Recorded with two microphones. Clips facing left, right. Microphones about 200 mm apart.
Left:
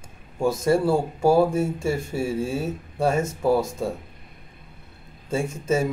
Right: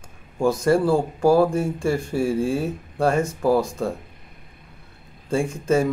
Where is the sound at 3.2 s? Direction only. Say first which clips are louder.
Right 1 dB; 25° left (ahead or behind).